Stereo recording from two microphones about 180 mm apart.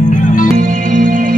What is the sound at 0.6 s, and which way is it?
Music, 45° right (ahead or behind).